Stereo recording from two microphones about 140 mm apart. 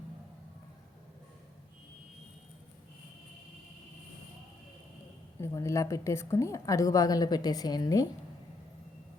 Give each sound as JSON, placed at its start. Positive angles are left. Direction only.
{"t": 5.4, "sound": "a woman's voice", "side_deg": 20}